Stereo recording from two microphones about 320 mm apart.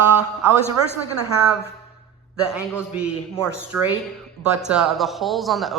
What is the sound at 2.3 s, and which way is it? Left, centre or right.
Speech, centre.